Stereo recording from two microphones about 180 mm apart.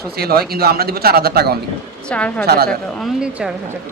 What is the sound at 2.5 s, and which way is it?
Speech, 60° right (ahead or behind).